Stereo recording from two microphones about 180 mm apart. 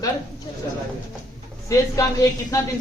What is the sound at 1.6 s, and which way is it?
Speech, 20° left (ahead or behind).